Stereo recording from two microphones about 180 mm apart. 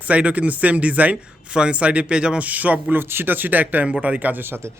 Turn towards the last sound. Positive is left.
turn(degrees=-10)  # may be behind; listen again after turning